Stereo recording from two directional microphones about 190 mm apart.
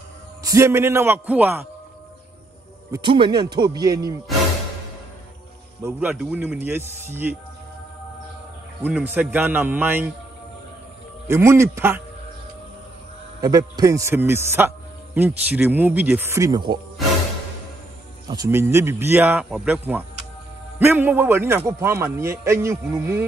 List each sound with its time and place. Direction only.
0.4 s a man's voice: 15° right (ahead or behind)
2.9 s a man's voice: 25° right (ahead or behind)
5.9 s a man's voice: 10° right (ahead or behind)
8.8 s a man's voice: 10° right (ahead or behind)
11.2 s a man's voice: 15° right (ahead or behind)
13.4 s a man's voice: 20° right (ahead or behind)
18.3 s a man's voice: 15° right (ahead or behind)